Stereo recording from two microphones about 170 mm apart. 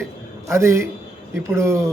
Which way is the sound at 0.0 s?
15° right (ahead or behind).